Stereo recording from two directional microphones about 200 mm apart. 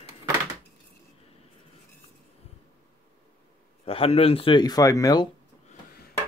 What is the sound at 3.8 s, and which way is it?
Speech, 30° left (ahead or behind).